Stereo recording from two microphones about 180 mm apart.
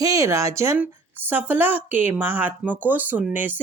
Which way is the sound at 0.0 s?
20° right (ahead or behind).